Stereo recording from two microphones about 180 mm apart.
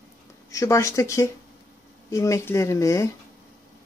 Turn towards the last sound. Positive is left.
turn(degrees=15)  # may be behind; listen again after turning